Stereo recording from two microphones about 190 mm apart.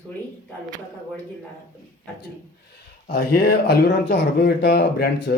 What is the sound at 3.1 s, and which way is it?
Speech, 55° left (ahead or behind).